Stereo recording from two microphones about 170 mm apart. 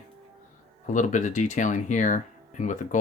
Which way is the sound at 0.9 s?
45° left (ahead or behind).